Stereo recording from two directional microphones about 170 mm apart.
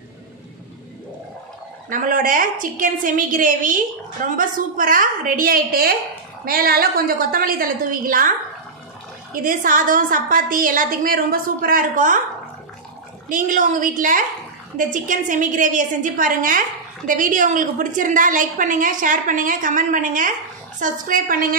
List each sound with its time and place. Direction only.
1.9 s a woman's voice: 50° right (ahead or behind)
13.3 s a woman's voice: 50° right (ahead or behind)